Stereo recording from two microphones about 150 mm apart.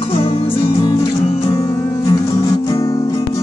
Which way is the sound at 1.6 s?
40° left (ahead or behind).